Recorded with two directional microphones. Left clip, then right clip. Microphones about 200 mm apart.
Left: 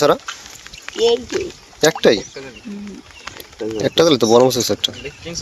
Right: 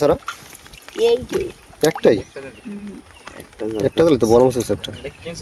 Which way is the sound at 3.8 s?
5° right (ahead or behind).